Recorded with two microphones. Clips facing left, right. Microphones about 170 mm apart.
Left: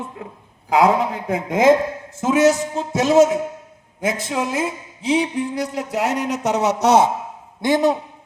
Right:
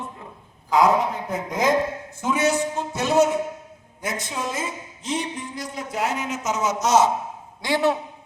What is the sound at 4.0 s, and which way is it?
Speech, 80° left.